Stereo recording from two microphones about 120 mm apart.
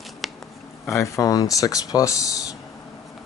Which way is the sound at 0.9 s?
25° left (ahead or behind).